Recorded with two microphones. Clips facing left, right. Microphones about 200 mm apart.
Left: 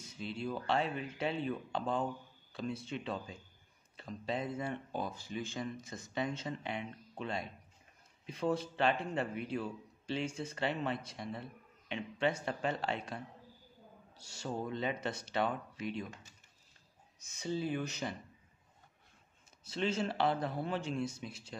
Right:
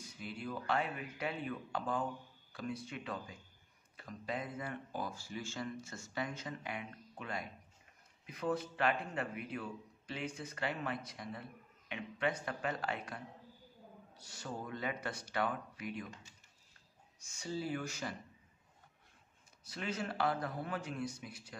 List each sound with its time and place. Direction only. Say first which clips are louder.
0.0 s speech: left 4 dB; 25° left (ahead or behind)
17.2 s speech: left 4 dB; 20° left (ahead or behind)
19.6 s speech: left 6 dB; 25° left (ahead or behind)